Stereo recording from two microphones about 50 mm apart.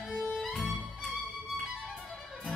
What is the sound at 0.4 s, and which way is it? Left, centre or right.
Music, centre.